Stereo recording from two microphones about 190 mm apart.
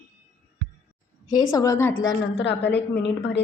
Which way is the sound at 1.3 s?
20° left (ahead or behind).